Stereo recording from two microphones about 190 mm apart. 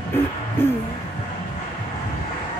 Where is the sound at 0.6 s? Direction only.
10° left (ahead or behind).